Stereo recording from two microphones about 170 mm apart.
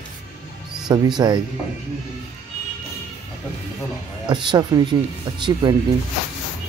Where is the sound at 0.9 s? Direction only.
25° right (ahead or behind).